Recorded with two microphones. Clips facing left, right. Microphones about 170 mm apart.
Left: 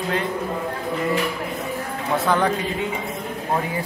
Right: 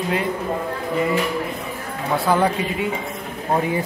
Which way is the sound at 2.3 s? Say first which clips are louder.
Right 2 dB; 10° right (ahead or behind).